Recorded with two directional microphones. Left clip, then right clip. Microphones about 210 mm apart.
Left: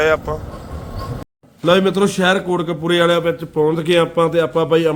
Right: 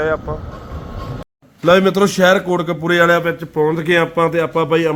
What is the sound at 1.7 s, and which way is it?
A man's voice, 30° right (ahead or behind).